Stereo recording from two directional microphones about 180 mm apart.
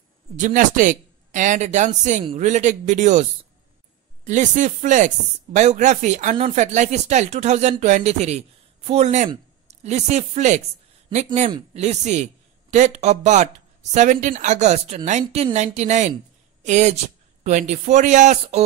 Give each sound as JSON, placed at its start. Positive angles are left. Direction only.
{"t": 0.4, "sound": "speech", "side_deg": -45}